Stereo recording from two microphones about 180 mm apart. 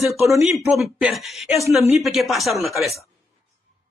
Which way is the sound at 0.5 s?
Centre (ahead or behind).